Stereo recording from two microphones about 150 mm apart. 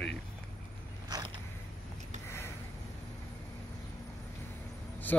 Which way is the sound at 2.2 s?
15° left (ahead or behind).